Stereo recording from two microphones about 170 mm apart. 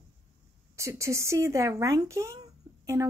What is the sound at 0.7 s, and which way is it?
Speech, 15° right (ahead or behind).